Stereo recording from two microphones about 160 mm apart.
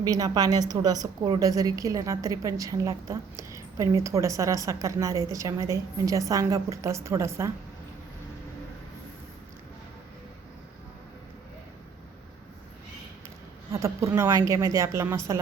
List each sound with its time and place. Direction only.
0.0 s a woman's voice: 25° right (ahead or behind)
13.7 s a woman's voice: 20° right (ahead or behind)